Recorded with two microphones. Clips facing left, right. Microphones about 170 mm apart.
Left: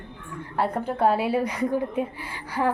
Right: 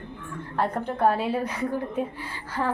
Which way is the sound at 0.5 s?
10° left (ahead or behind).